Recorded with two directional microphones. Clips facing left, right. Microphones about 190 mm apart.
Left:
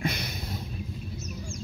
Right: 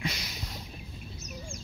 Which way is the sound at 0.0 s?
55° left (ahead or behind).